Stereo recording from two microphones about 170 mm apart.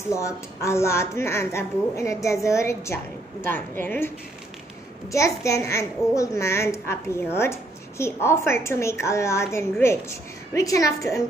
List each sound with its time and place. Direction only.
0.1 s a child's voice: 15° left (ahead or behind)
5.1 s a child's voice: 20° left (ahead or behind)